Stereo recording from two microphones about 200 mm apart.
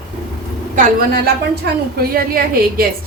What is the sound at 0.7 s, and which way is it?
A woman's voice, 50° right (ahead or behind).